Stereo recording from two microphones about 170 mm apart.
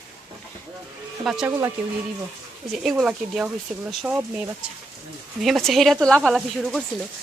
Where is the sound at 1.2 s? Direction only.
5° right (ahead or behind).